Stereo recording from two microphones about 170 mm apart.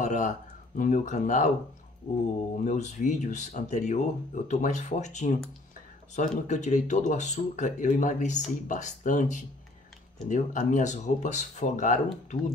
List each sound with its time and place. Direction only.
0.0 s a sound: 45° left (ahead or behind)
0.7 s speech: 45° left (ahead or behind)
2.6 s speech: 45° left (ahead or behind)